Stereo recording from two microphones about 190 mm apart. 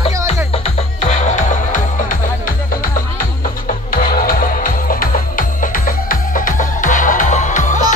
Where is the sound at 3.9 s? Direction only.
50° left (ahead or behind).